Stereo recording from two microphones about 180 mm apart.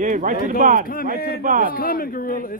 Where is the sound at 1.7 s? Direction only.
55° left (ahead or behind).